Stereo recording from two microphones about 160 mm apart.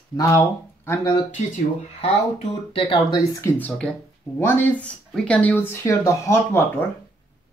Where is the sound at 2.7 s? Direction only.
35° left (ahead or behind).